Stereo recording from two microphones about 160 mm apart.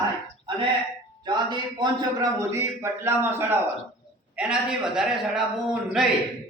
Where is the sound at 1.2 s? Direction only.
25° right (ahead or behind); by 5.4 s 5° right (ahead or behind).